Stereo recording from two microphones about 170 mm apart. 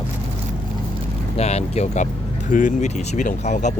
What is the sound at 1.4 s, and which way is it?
Speech, 40° left (ahead or behind).